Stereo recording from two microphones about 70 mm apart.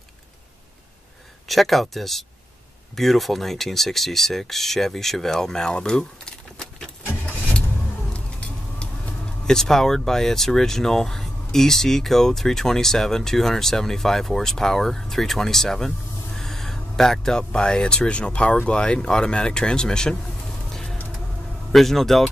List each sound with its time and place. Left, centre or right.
1.5 s speech: centre
7.2 s vehicle: left
9.5 s speech: centre
20.7 s a sound: centre
21.7 s speech: centre